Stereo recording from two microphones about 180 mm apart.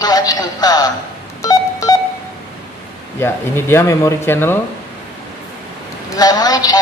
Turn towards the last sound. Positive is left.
turn(degrees=20)  # may be behind; listen again after turning